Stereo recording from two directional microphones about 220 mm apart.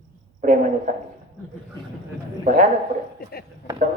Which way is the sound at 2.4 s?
35° right (ahead or behind).